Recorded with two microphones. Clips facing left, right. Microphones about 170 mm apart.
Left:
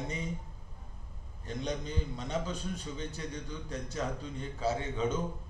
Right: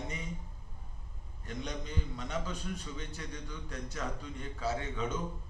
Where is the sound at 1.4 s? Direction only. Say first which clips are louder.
Left 4 dB; 30° left (ahead or behind).